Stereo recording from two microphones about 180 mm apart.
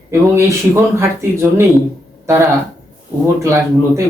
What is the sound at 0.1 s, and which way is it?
Speech, 15° right (ahead or behind).